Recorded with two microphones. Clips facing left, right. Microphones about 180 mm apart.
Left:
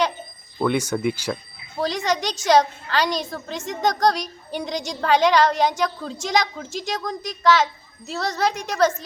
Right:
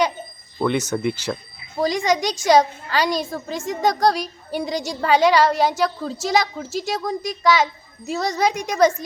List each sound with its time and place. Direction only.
0.6 s speech: 10° left (ahead or behind)
1.7 s a woman's voice: 10° right (ahead or behind)